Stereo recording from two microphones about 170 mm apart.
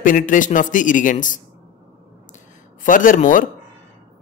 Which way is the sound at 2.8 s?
50° left (ahead or behind).